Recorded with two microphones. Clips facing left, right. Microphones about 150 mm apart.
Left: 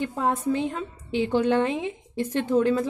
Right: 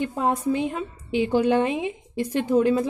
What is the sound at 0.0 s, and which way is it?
A woman's voice, 15° right (ahead or behind).